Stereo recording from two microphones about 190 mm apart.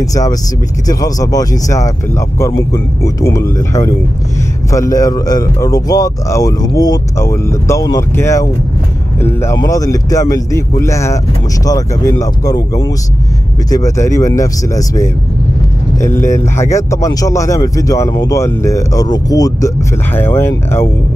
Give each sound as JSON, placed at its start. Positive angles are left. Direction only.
{"t": 0.0, "sound": "speech", "side_deg": 20}